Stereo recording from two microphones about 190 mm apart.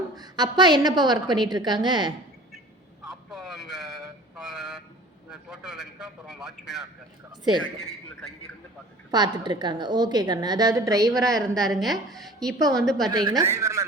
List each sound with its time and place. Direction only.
0.2 s a woman's voice: 20° right (ahead or behind)
3.1 s a sound: centre (ahead or behind)
5.3 s a man's voice: 5° right (ahead or behind)
9.1 s a woman's voice: 25° right (ahead or behind)
11.1 s a woman's voice: centre (ahead or behind)
13.1 s speech: 20° right (ahead or behind)